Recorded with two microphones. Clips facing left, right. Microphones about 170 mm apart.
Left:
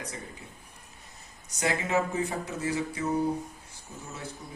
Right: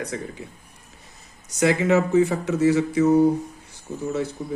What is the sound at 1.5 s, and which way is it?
Speech, 80° right.